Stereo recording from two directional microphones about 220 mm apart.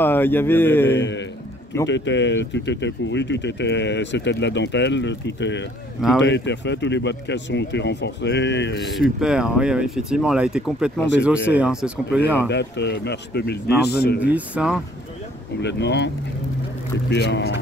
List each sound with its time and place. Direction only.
0.0 s speech: 10° left (ahead or behind)
1.9 s speech: 55° left (ahead or behind)
9.2 s speech: 5° right (ahead or behind)
12.4 s speech: 50° left (ahead or behind)
14.2 s speech: 5° right (ahead or behind)
15.6 s speech: 50° left (ahead or behind)
17.1 s speech: 50° left (ahead or behind)